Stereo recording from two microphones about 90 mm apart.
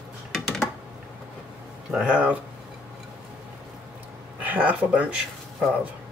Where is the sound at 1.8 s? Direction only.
10° right (ahead or behind).